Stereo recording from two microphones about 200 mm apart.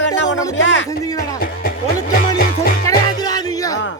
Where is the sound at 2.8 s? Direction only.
20° left (ahead or behind).